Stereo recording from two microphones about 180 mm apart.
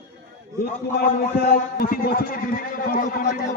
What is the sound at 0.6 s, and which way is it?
A man's voice, 55° left (ahead or behind).